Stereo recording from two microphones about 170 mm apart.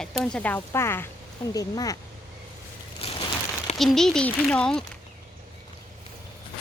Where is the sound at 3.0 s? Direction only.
35° left (ahead or behind).